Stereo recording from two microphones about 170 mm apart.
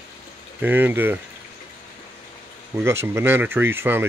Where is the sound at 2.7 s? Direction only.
15° right (ahead or behind).